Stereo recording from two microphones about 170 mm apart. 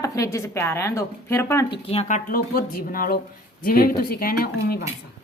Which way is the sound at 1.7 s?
35° left (ahead or behind).